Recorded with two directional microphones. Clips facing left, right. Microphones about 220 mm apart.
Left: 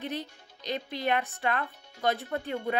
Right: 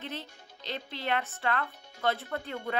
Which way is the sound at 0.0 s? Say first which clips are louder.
Left 5 dB; 15° left (ahead or behind).